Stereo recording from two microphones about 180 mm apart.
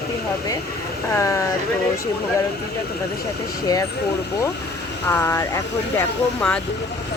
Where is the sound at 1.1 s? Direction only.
15° left (ahead or behind).